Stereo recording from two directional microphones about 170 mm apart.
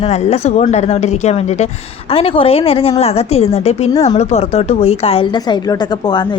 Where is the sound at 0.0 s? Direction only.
40° left (ahead or behind).